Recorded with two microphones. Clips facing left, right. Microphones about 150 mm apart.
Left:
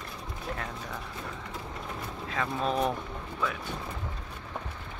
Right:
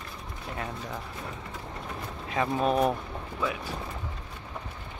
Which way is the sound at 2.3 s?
20° right (ahead or behind).